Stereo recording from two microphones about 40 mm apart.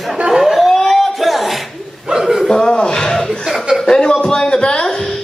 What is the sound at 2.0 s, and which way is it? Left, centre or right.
Chuckle, centre.